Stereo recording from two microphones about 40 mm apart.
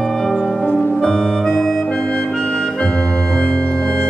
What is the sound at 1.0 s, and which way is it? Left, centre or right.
Music, centre.